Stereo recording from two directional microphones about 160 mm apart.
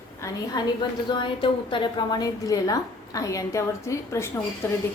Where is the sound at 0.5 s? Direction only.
25° left (ahead or behind).